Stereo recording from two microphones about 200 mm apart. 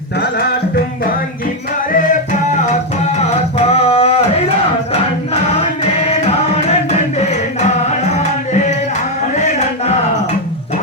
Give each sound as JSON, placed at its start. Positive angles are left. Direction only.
{"t": 1.9, "sound": "music", "side_deg": 40}
{"t": 3.7, "sound": "music", "side_deg": 30}
{"t": 6.9, "sound": "music", "side_deg": 35}
{"t": 9.3, "sound": "a sound", "side_deg": 35}